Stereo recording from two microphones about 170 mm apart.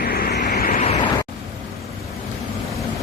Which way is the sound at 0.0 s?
60° left (ahead or behind).